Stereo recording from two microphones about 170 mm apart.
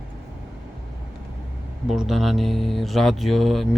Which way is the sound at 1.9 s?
Centre (ahead or behind).